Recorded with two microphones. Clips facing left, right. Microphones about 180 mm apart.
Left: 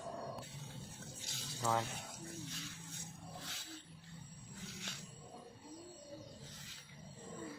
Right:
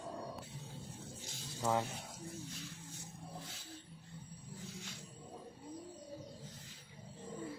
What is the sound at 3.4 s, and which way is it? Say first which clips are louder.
Roaring cats: even; 90° left.